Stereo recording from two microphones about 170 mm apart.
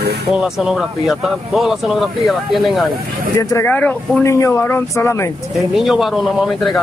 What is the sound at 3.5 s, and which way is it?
Speech, 10° left (ahead or behind).